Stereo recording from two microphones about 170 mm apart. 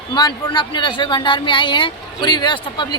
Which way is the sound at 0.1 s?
25° left (ahead or behind).